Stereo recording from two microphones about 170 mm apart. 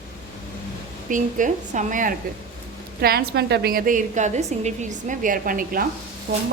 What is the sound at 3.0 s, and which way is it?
A woman's voice, 70° right (ahead or behind).